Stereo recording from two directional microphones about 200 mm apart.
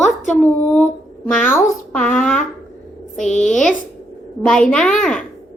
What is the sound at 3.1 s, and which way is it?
Speech, 35° left (ahead or behind).